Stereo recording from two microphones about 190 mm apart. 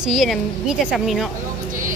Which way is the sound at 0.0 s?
Centre (ahead or behind).